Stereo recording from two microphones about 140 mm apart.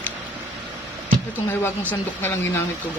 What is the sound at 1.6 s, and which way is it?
Speech, 15° left (ahead or behind).